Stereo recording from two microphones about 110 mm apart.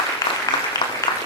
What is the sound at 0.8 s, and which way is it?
Applause, 45° left (ahead or behind).